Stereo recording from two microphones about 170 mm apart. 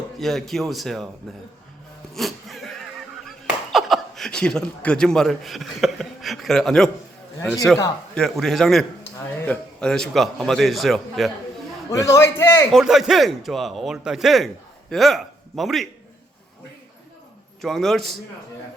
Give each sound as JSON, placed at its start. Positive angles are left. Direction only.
{"t": 0.2, "sound": "speech", "side_deg": 0}
{"t": 2.1, "sound": "speech", "side_deg": 0}
{"t": 8.1, "sound": "speech", "side_deg": 0}
{"t": 11.9, "sound": "a man's voice", "side_deg": 20}
{"t": 12.7, "sound": "speech", "side_deg": 0}
{"t": 17.6, "sound": "speech", "side_deg": 0}